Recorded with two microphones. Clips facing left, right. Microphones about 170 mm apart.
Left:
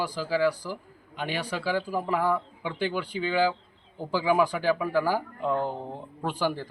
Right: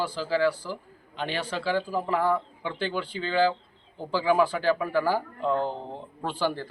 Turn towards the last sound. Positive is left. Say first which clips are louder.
# even
turn(degrees=15)  # may be behind; listen again after turning